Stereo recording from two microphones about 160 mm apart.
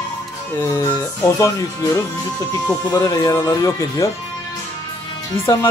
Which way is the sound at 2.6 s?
20° left (ahead or behind).